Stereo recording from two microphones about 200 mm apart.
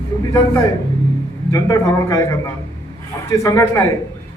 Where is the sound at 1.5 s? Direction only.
15° left (ahead or behind).